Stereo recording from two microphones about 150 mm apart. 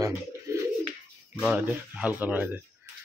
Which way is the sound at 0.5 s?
20° right (ahead or behind).